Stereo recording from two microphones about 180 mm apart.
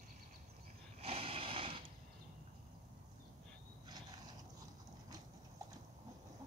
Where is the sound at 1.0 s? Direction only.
30° right (ahead or behind).